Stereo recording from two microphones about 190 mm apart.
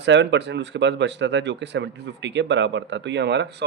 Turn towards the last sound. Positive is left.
turn(degrees=-65)  # may be behind; listen again after turning